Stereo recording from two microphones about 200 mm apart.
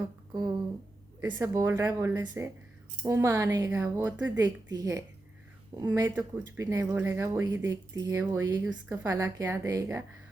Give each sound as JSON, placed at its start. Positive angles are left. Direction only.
{"t": 1.3, "sound": "speech", "side_deg": -15}